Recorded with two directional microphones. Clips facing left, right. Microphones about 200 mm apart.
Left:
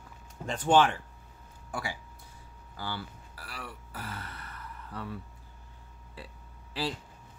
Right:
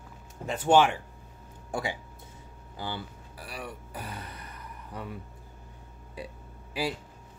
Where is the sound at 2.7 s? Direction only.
20° right (ahead or behind).